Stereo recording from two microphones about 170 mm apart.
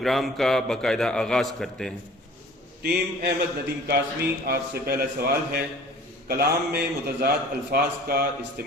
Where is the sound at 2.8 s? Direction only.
65° right (ahead or behind).